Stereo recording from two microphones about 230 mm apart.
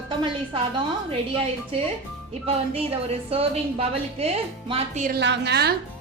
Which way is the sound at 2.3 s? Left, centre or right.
Right.